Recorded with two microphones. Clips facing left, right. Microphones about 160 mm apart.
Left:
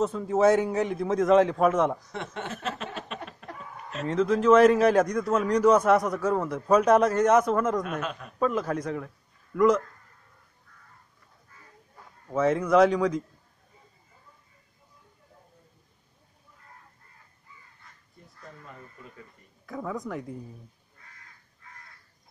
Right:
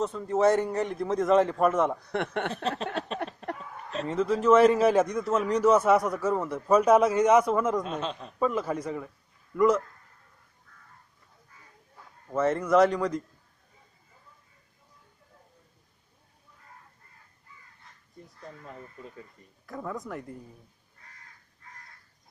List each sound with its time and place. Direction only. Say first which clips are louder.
0.0 s a man's voice: left 2 dB; 5° left (ahead or behind)
2.0 s speech: right 6 dB; 60° right (ahead or behind)
3.4 s a sound: right 7 dB; 35° right (ahead or behind)
4.0 s a man's voice: left 2 dB; 5° right (ahead or behind)
7.8 s speech: even; 25° right (ahead or behind)
8.4 s a man's voice: left 1 dB; 5° right (ahead or behind)
12.3 s a man's voice: left 1 dB; centre (ahead or behind)
19.6 s a man's voice: left 2 dB; centre (ahead or behind)